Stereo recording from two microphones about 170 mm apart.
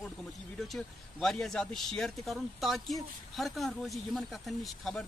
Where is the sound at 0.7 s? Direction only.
5° left (ahead or behind).